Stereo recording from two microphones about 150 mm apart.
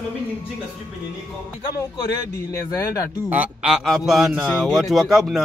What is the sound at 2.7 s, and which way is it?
Speech, 20° left (ahead or behind).